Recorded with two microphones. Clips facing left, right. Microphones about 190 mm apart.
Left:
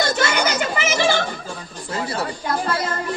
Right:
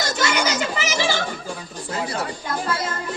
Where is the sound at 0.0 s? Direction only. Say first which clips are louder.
Left 2 dB; 55° left (ahead or behind).